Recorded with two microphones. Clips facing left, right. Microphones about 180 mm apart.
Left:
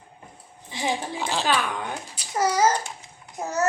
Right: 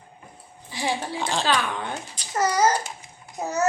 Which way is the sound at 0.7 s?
20° left (ahead or behind).